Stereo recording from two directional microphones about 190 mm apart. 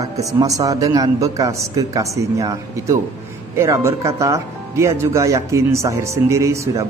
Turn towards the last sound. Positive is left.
turn(degrees=-15)  # may be behind; listen again after turning